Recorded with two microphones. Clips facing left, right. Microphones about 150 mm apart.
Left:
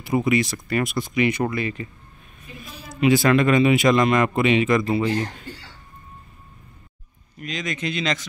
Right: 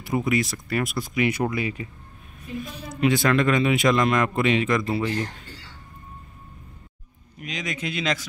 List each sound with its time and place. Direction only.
0.0 s a man's voice: centre (ahead or behind)
2.6 s a woman's voice: 5° left (ahead or behind)
7.3 s speech: 10° right (ahead or behind)